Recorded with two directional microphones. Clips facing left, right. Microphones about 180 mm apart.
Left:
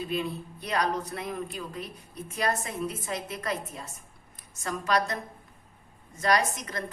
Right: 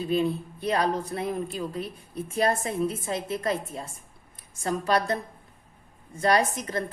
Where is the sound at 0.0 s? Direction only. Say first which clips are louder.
Right 6 dB; 30° right (ahead or behind).